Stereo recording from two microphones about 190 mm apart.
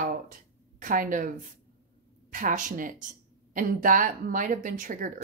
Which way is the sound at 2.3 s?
45° right (ahead or behind).